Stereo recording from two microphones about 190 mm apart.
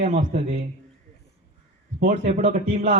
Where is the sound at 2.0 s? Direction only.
40° right (ahead or behind).